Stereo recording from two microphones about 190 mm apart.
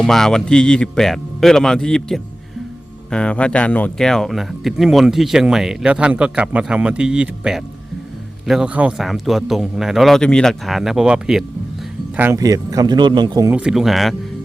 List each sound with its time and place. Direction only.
0.0 s speech: centre (ahead or behind); by 13.5 s 20° right (ahead or behind)
13.5 s speech: 5° right (ahead or behind)